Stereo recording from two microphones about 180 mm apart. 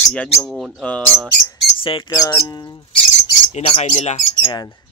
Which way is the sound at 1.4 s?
25° left (ahead or behind).